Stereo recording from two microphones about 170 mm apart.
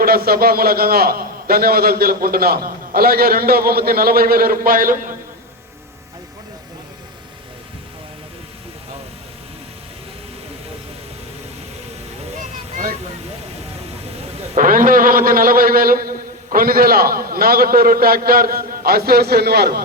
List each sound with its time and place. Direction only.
0.0 s a man's voice: 60° right (ahead or behind)
12.4 s a sound: 45° right (ahead or behind)
14.5 s a man's voice: 55° right (ahead or behind)